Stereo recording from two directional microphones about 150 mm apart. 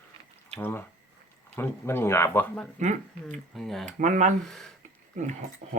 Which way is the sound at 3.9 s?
55° right (ahead or behind).